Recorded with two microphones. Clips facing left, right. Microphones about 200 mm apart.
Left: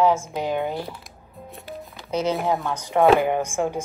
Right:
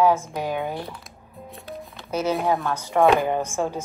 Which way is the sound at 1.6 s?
Centre (ahead or behind).